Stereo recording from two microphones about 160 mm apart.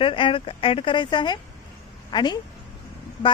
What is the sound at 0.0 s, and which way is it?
A woman's voice, 35° left (ahead or behind).